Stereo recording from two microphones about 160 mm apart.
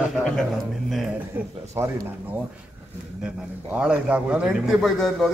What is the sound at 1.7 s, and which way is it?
Speech, 15° right (ahead or behind).